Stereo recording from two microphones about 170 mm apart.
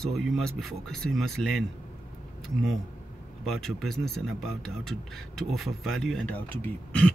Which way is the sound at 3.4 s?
Centre (ahead or behind).